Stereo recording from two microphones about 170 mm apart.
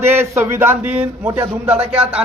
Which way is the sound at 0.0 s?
15° right (ahead or behind).